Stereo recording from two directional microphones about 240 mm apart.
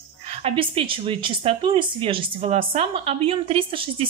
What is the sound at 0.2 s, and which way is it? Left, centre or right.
Speech, right.